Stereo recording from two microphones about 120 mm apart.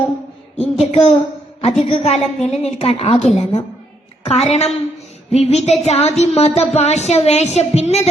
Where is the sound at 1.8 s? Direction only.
60° left (ahead or behind).